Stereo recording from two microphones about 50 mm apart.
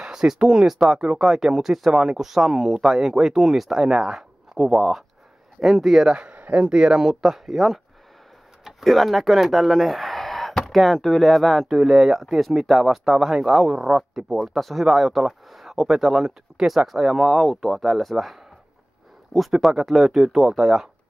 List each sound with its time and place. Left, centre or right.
0.0 s speech: centre
6.0 s speech: right
6.7 s speech: centre